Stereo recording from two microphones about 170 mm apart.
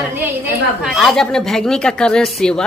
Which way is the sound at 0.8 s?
Centre (ahead or behind).